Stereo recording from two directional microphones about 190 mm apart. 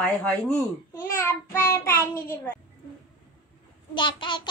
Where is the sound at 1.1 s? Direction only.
15° left (ahead or behind).